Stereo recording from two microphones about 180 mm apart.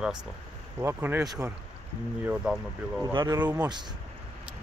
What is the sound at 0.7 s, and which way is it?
A man's voice, 10° right (ahead or behind).